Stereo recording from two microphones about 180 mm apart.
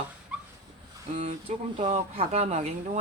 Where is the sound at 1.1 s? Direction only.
35° right (ahead or behind).